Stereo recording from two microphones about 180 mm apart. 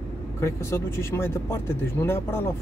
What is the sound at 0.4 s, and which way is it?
Speech, 15° left (ahead or behind).